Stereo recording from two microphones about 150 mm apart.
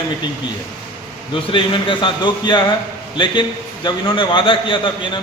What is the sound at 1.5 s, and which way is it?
A man's voice, 35° left (ahead or behind).